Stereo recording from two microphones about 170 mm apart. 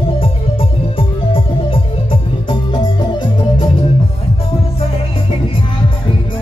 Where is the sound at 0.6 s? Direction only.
30° left (ahead or behind).